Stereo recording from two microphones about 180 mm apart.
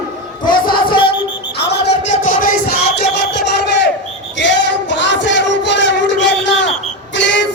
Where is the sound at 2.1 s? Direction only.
50° left (ahead or behind); by 3.4 s 70° left (ahead or behind).